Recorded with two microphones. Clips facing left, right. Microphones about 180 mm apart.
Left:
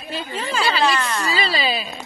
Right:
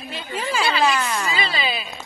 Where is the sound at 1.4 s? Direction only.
35° left (ahead or behind).